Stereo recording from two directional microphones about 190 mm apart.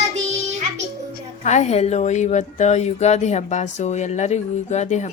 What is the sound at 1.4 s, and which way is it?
Speech, 35° left (ahead or behind).